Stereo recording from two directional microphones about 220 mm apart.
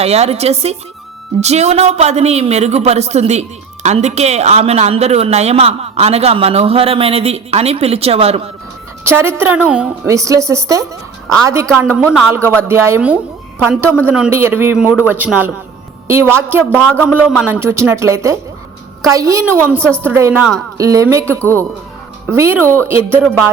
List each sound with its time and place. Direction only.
0.0 s a woman's voice: 30° right (ahead or behind)
9.0 s a woman's voice: 10° right (ahead or behind)
12.0 s a man's voice: 5° left (ahead or behind)
12.3 s a woman's voice: 10° right (ahead or behind)
16.9 s a man's voice: 5° left (ahead or behind)
17.4 s a woman's voice: 10° right (ahead or behind)